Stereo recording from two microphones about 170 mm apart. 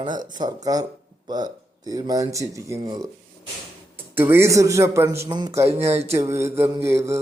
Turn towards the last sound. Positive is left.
turn(degrees=-15)  # may be behind; listen again after turning